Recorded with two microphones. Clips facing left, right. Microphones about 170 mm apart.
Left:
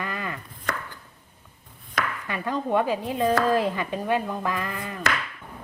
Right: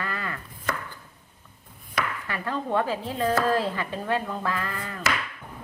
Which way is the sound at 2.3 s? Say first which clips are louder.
Left 4 dB; 15° left (ahead or behind).